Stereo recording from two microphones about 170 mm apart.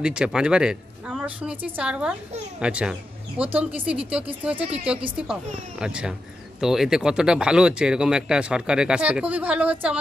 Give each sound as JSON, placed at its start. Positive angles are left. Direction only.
{"t": 0.0, "sound": "speech", "side_deg": -5}